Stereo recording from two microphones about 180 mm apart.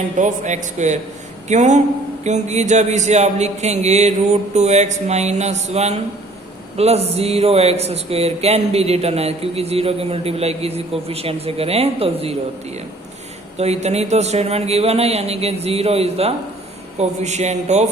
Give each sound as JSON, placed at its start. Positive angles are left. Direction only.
{"t": 0.2, "sound": "speech", "side_deg": -45}